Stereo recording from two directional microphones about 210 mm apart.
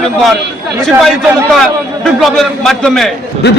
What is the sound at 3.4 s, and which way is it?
Speech, 50° left (ahead or behind).